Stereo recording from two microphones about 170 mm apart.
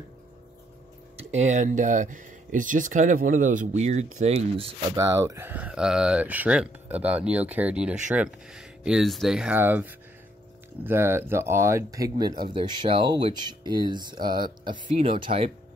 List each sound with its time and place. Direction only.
1.1 s speech: 40° right (ahead or behind)
4.9 s speech: 20° right (ahead or behind)